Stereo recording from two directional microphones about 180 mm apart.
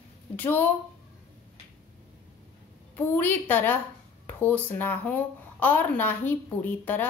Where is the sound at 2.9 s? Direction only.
10° left (ahead or behind).